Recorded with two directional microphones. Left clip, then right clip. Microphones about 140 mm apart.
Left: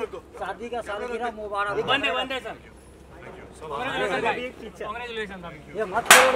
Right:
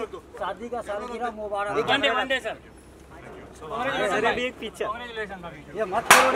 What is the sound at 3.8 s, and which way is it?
Speech, 30° right (ahead or behind).